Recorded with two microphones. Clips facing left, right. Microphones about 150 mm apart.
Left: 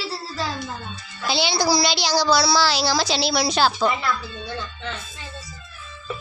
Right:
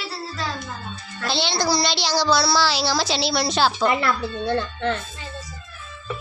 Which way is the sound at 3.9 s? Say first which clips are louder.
Right 3 dB; 70° right (ahead or behind).